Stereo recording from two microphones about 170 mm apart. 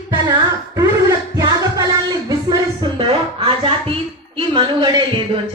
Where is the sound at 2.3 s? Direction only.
25° right (ahead or behind).